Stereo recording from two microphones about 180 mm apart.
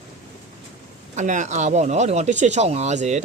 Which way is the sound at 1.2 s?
40° right (ahead or behind).